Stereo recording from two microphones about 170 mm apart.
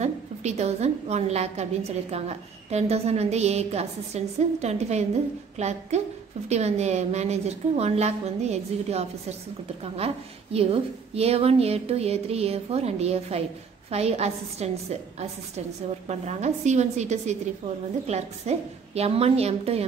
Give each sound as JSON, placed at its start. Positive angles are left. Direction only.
{"t": 0.0, "sound": "a woman's voice", "side_deg": -40}